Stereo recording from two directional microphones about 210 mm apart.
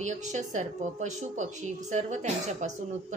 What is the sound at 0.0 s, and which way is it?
A woman's voice, 35° right (ahead or behind).